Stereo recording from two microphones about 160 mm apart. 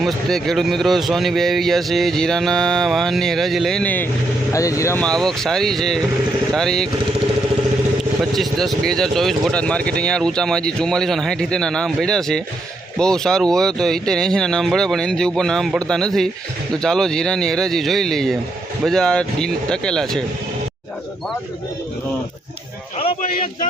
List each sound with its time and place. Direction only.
0.0 s speech: centre (ahead or behind); by 5.0 s 20° left (ahead or behind)
5.0 s speech: 5° left (ahead or behind)
8.2 s speech: centre (ahead or behind)